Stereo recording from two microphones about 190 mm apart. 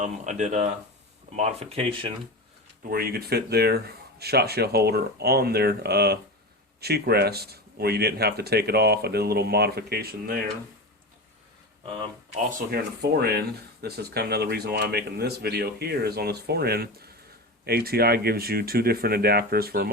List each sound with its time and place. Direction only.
0.0 s speech: 40° right (ahead or behind)
2.9 s speech: 55° right (ahead or behind)
12.5 s speech: 45° right (ahead or behind)
13.0 s speech: 60° right (ahead or behind)